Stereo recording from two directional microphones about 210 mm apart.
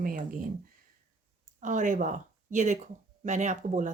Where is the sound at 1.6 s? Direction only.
35° right (ahead or behind).